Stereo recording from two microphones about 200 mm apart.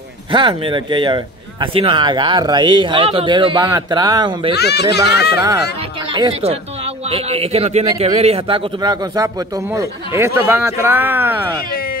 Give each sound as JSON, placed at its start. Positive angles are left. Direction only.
{"t": 0.3, "sound": "a man's voice", "side_deg": -25}
{"t": 4.6, "sound": "speech", "side_deg": 55}
{"t": 6.1, "sound": "a man's voice", "side_deg": -25}
{"t": 11.7, "sound": "a sound", "side_deg": 45}